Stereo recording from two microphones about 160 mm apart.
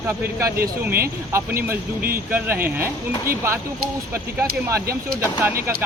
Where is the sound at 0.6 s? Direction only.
70° right (ahead or behind).